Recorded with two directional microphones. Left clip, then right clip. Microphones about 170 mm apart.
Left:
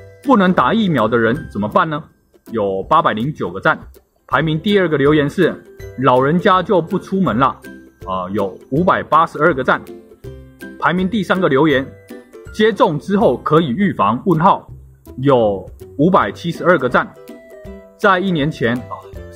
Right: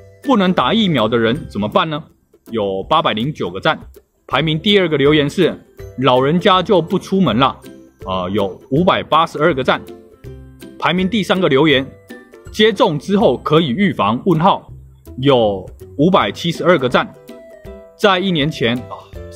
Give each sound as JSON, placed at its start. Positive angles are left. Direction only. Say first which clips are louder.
{"t": 0.2, "sound": "speech", "louder": "left 2 dB", "side_deg": -5}
{"t": 13.7, "sound": "speech", "louder": "right 2 dB", "side_deg": 35}
{"t": 13.9, "sound": "speech", "louder": "left 2 dB", "side_deg": -5}